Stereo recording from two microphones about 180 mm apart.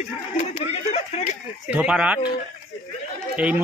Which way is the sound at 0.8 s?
40° left (ahead or behind).